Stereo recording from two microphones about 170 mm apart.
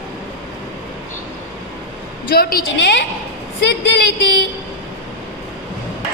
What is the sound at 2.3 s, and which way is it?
A woman's voice, 60° left (ahead or behind).